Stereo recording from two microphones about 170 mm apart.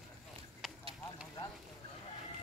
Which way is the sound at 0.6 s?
Centre (ahead or behind).